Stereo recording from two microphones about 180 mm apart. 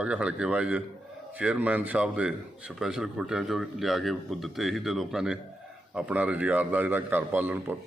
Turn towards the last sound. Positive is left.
turn(degrees=-10)  # may be behind; listen again after turning